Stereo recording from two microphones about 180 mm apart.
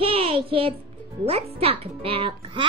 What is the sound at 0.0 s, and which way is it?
Music, 30° right (ahead or behind).